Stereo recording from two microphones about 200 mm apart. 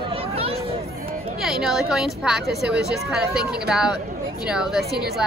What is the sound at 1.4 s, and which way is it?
Speech, centre (ahead or behind).